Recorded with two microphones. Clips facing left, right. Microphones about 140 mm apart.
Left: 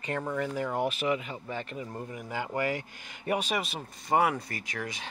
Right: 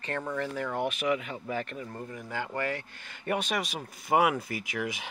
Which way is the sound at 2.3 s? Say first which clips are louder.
Left 2 dB; 15° left (ahead or behind).